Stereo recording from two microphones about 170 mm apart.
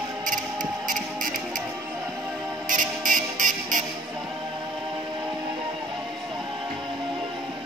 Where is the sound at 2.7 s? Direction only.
50° right (ahead or behind).